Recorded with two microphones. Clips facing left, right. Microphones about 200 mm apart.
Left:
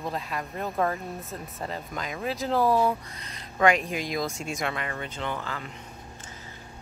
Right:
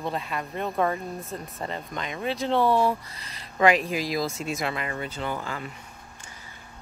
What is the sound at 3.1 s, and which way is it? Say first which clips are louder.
Speech: left 1 dB; 30° right (ahead or behind).